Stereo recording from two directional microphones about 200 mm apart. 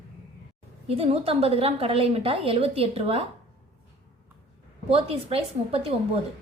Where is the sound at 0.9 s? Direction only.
30° right (ahead or behind).